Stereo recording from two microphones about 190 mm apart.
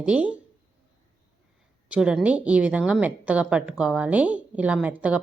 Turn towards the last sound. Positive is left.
turn(degrees=-5)  # may be behind; listen again after turning